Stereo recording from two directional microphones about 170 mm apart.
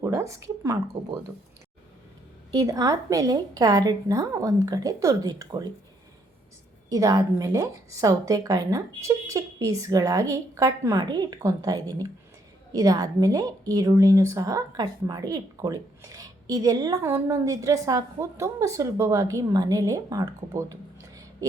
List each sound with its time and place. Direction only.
0.0 s speech: 15° right (ahead or behind)
2.5 s a woman's voice: 20° right (ahead or behind)
6.9 s a woman's voice: 20° right (ahead or behind)